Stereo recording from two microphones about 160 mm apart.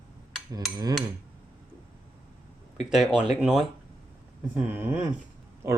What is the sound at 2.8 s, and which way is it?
Speech, 5° right (ahead or behind).